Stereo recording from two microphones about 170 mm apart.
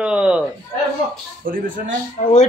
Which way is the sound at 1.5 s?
55° right (ahead or behind).